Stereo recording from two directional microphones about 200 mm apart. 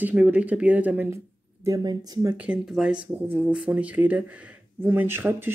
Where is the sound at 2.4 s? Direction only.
5° right (ahead or behind).